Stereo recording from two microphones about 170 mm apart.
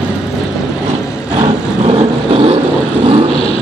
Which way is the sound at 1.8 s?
35° right (ahead or behind).